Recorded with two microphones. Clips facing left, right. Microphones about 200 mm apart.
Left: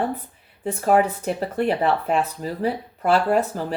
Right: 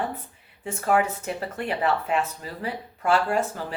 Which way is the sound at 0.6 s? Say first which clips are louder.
Left 4 dB; 35° left (ahead or behind).